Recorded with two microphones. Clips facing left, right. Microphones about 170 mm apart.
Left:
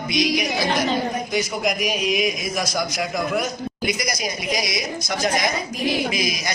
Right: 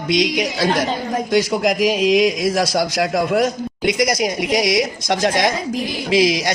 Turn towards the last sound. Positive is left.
turn(degrees=-90)